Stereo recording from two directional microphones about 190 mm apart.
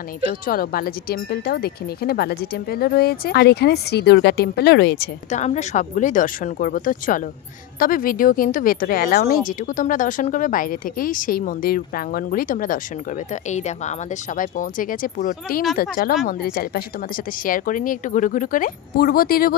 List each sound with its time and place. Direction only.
0.3 s speech: 50° left (ahead or behind)
5.3 s speech: 35° left (ahead or behind)